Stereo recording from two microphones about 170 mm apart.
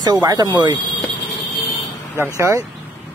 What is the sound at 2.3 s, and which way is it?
Speech, 15° right (ahead or behind).